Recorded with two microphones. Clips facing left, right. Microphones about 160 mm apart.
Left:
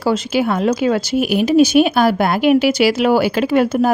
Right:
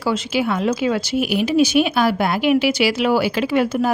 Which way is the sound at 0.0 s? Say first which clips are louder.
Left 4 dB; 45° left (ahead or behind).